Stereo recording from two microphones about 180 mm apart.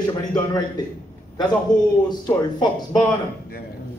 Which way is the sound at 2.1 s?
25° left (ahead or behind).